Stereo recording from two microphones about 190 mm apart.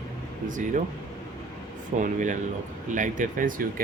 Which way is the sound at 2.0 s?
40° right (ahead or behind).